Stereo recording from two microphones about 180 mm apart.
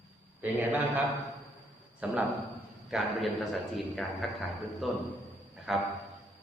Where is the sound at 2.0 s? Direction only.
5° right (ahead or behind).